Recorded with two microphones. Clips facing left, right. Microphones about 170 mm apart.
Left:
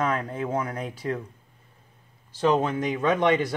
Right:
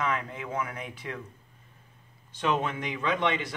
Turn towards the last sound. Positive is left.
turn(degrees=45)  # may be behind; listen again after turning